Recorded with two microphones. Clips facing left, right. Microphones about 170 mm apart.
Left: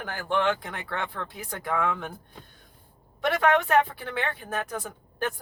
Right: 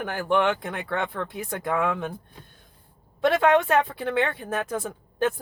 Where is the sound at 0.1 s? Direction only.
20° right (ahead or behind).